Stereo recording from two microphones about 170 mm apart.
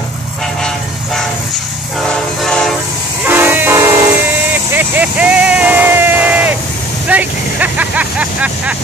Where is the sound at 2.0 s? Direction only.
5° left (ahead or behind).